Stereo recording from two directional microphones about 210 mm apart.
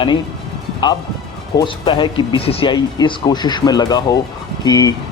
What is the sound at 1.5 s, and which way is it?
Speech, 20° left (ahead or behind).